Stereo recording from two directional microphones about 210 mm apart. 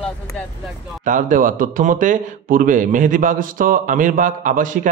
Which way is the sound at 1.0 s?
40° right (ahead or behind).